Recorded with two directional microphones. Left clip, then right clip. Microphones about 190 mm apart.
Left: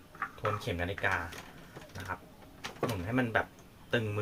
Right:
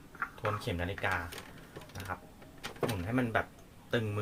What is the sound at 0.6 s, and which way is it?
Speech, 5° right (ahead or behind).